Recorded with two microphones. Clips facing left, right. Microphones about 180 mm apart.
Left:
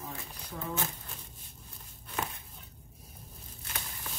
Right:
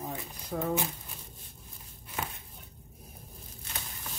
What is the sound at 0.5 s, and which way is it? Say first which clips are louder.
Speech: right 8 dB; 65° right (ahead or behind).